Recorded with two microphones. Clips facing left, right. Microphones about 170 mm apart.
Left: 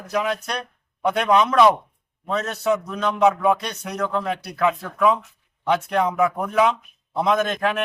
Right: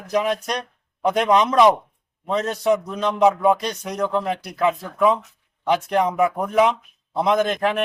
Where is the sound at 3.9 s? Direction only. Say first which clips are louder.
Right 1 dB; 20° right (ahead or behind).